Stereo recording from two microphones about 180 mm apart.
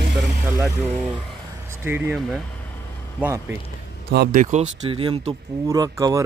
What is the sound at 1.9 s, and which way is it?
Speech, 10° right (ahead or behind).